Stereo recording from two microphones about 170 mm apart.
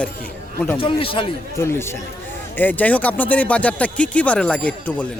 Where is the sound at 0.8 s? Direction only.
30° left (ahead or behind).